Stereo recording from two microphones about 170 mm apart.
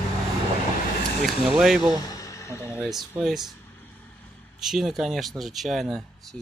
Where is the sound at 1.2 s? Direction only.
Centre (ahead or behind).